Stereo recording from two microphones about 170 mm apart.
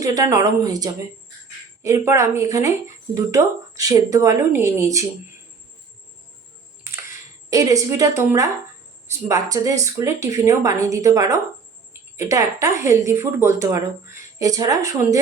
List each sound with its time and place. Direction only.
0.0 s a woman's voice: 20° right (ahead or behind)
7.5 s a woman's voice: 20° right (ahead or behind)